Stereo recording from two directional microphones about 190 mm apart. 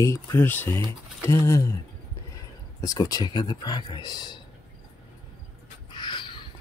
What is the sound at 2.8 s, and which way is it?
Speech, 20° left (ahead or behind).